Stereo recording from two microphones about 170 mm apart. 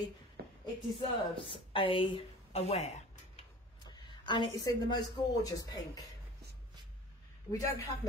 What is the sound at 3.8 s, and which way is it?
Speech, 25° left (ahead or behind).